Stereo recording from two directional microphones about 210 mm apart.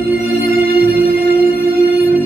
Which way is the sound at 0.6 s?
45° right (ahead or behind).